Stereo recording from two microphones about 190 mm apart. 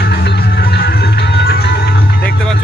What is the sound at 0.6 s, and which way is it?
Music, 55° left (ahead or behind).